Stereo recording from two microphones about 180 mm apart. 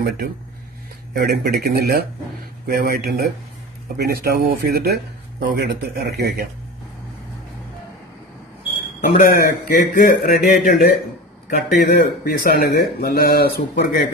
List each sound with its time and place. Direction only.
1.1 s speech: 65° right (ahead or behind)
9.1 s speech: 50° left (ahead or behind)